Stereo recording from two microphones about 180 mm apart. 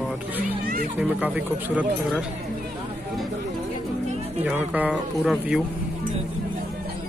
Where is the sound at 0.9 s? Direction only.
10° right (ahead or behind).